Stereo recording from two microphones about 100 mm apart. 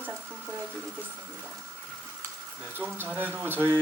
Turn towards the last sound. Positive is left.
turn(degrees=-20)  # may be behind; listen again after turning